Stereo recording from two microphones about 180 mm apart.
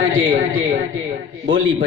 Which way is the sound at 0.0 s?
90° right.